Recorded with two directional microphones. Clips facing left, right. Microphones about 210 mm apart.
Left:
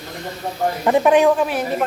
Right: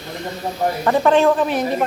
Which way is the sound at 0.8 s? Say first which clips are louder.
Left 1 dB; 15° left (ahead or behind).